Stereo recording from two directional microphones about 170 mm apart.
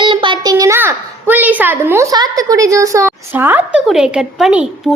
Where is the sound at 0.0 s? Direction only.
30° right (ahead or behind).